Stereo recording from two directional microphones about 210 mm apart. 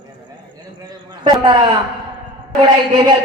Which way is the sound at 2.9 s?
25° right (ahead or behind).